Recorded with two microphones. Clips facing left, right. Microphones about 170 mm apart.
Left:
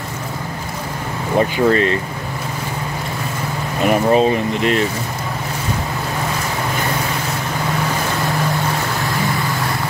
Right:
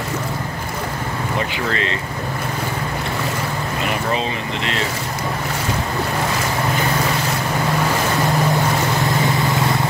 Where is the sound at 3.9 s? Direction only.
45° left (ahead or behind).